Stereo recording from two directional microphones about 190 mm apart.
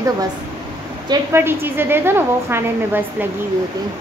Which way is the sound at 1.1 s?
15° right (ahead or behind).